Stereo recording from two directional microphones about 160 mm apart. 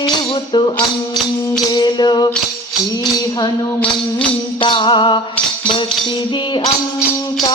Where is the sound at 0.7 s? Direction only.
5° left (ahead or behind).